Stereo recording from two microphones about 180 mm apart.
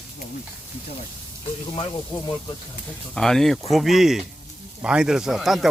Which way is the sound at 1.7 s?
30° left (ahead or behind).